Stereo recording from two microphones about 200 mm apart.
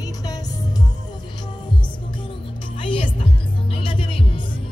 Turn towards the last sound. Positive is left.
turn(degrees=25)  # may be behind; listen again after turning